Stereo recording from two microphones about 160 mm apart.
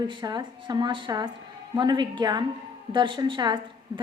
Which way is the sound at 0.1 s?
30° right (ahead or behind).